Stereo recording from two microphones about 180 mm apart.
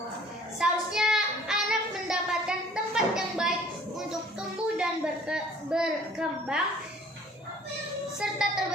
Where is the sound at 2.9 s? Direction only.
5° right (ahead or behind).